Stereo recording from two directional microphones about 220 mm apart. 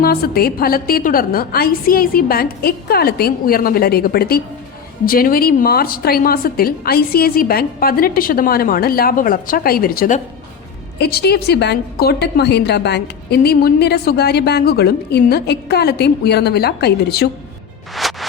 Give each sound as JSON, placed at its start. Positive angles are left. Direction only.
{"t": 0.0, "sound": "a woman's voice", "side_deg": 45}
{"t": 17.9, "sound": "music", "side_deg": 0}